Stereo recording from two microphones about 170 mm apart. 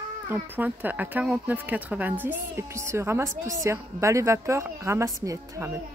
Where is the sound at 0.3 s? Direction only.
10° right (ahead or behind).